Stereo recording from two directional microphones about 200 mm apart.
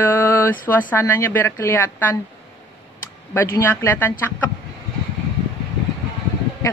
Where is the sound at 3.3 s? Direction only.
10° left (ahead or behind).